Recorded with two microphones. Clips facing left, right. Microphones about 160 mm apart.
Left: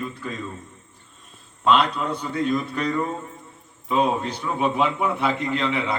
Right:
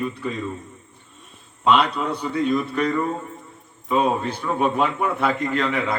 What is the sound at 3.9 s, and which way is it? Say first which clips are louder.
A man's voice: right 1 dB; 55° right (ahead or behind).